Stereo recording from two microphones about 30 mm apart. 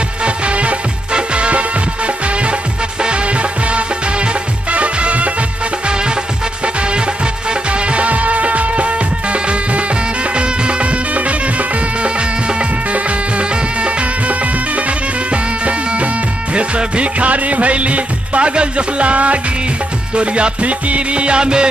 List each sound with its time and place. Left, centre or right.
0.2 s music: right
4.7 s music: right
7.9 s music: right
12.5 s music: right
16.5 s music: right